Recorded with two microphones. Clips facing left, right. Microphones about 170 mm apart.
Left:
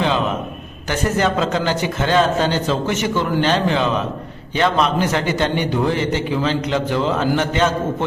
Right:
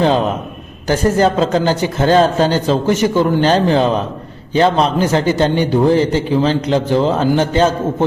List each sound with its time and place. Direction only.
0.9 s a man's voice: 35° right (ahead or behind)